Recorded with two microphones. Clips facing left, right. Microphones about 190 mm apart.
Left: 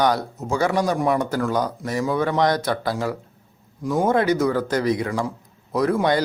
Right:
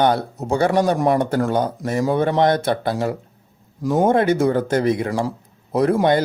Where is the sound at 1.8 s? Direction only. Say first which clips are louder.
Right 4 dB; 45° right (ahead or behind).